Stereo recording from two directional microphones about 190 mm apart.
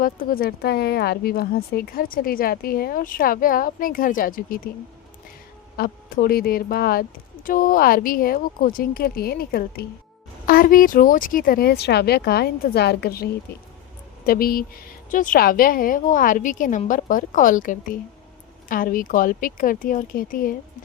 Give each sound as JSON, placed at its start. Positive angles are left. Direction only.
{"t": 0.0, "sound": "a woman's voice", "side_deg": 50}
{"t": 5.7, "sound": "a woman's voice", "side_deg": 50}